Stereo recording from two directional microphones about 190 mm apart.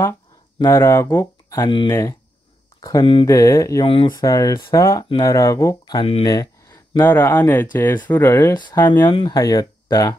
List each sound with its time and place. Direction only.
0.6 s speech: 15° left (ahead or behind)
3.8 s speech: 30° left (ahead or behind)
4.1 s speech: 15° left (ahead or behind)
5.9 s speech: 30° left (ahead or behind)